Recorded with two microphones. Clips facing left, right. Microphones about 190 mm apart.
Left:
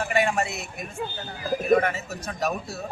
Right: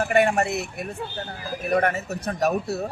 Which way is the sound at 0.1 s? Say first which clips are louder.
Right 4 dB; 60° right (ahead or behind).